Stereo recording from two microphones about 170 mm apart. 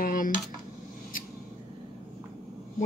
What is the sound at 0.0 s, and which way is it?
Dishes, 55° left (ahead or behind).